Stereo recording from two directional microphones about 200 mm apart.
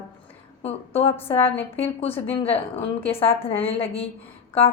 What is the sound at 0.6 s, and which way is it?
A woman's voice, 30° left (ahead or behind).